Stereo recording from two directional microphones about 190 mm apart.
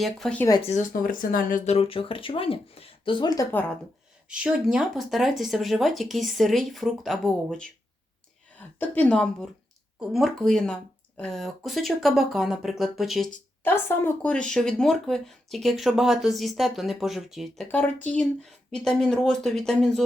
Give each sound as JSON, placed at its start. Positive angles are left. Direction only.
{"t": 0.0, "sound": "speech", "side_deg": 5}
{"t": 0.6, "sound": "speech", "side_deg": 40}
{"t": 3.5, "sound": "speech", "side_deg": 10}
{"t": 4.3, "sound": "speech", "side_deg": -5}
{"t": 8.8, "sound": "speech", "side_deg": 5}